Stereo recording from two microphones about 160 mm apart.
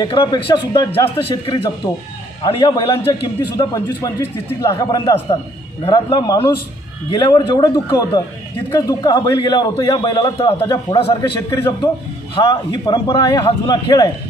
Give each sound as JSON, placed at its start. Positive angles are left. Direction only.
{"t": 0.0, "sound": "a man's voice", "side_deg": 30}